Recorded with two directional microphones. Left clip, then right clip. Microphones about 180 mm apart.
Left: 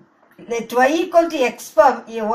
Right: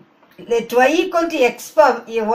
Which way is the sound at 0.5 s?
10° right (ahead or behind).